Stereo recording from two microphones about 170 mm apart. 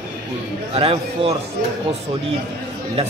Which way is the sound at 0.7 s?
35° right (ahead or behind).